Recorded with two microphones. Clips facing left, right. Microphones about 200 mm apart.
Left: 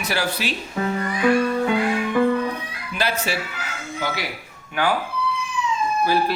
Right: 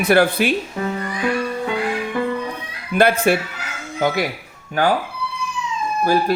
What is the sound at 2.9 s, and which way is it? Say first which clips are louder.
A man's voice: right 9 dB; 55° right (ahead or behind).